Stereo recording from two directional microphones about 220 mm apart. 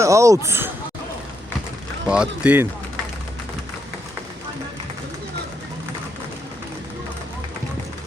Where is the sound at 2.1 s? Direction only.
5° right (ahead or behind).